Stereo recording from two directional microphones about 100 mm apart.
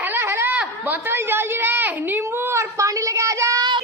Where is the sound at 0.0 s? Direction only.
25° right (ahead or behind).